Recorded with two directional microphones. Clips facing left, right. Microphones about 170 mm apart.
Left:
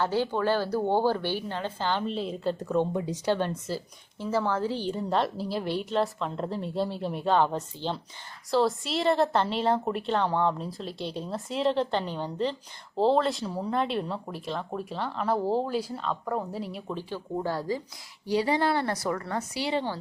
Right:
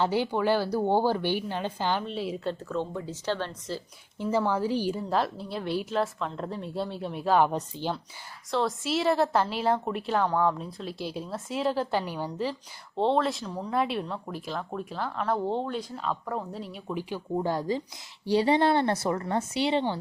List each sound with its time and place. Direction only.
0.0 s a woman's voice: 15° right (ahead or behind)
2.0 s a woman's voice: 5° right (ahead or behind)
2.6 s speech: 15° left (ahead or behind)
4.2 s a woman's voice: 15° right (ahead or behind)
5.0 s a woman's voice: centre (ahead or behind)
7.3 s a woman's voice: 15° right (ahead or behind)
8.4 s a woman's voice: centre (ahead or behind)
16.9 s a woman's voice: 10° right (ahead or behind)